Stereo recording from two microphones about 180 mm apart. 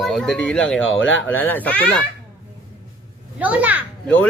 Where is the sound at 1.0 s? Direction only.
90° left.